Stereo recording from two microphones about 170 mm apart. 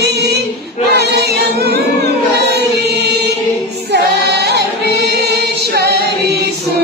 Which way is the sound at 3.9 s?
75° right (ahead or behind).